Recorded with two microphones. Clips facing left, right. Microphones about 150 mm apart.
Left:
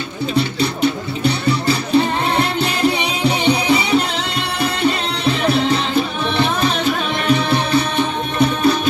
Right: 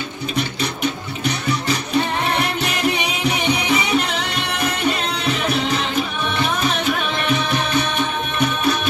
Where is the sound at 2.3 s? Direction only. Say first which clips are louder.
Left 3 dB; 30° left (ahead or behind).